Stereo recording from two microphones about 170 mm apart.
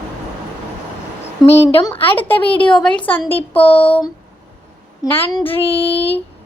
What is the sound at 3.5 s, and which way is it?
Speech, 35° left (ahead or behind).